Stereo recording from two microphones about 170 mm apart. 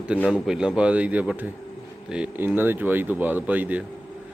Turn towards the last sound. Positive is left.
turn(degrees=-10)  # may be behind; listen again after turning